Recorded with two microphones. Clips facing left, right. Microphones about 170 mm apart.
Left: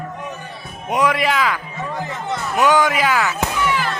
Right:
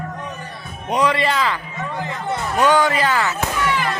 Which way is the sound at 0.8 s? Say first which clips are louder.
Even; 10° left (ahead or behind).